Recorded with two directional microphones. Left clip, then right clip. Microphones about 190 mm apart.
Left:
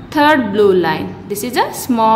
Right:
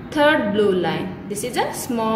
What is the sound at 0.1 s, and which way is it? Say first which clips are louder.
A woman's voice: left 5 dB; 50° left (ahead or behind).